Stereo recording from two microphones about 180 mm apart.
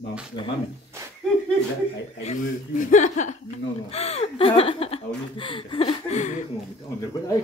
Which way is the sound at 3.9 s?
35° left (ahead or behind).